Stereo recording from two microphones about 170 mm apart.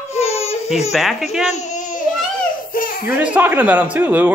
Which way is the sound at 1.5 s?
45° left (ahead or behind).